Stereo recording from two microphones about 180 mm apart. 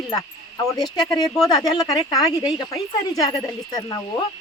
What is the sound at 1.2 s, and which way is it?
Speech, centre (ahead or behind).